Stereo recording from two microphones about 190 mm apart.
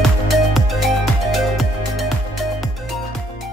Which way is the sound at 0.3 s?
Centre (ahead or behind).